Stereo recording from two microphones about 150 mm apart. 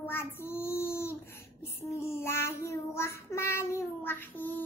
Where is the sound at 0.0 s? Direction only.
15° left (ahead or behind).